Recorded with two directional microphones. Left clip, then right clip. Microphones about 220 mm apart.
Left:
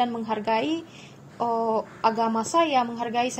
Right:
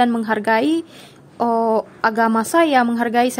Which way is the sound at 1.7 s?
50° right (ahead or behind).